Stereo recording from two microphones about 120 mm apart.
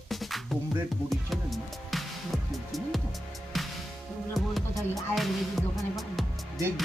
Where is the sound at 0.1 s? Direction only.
Centre (ahead or behind).